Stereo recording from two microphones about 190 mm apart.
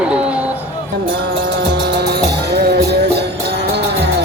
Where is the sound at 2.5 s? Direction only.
60° right (ahead or behind).